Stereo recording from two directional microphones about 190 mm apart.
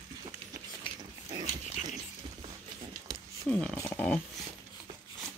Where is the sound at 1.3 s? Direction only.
30° right (ahead or behind).